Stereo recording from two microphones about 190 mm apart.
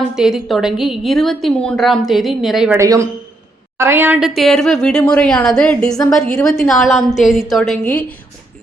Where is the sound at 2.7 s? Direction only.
15° right (ahead or behind).